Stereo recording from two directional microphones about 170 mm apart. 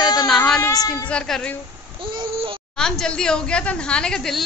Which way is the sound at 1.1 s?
5° left (ahead or behind).